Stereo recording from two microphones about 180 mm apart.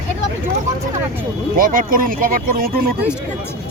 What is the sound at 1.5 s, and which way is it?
Speech, 50° right (ahead or behind).